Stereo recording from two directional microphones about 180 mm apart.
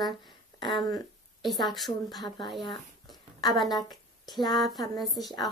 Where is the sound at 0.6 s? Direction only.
25° left (ahead or behind).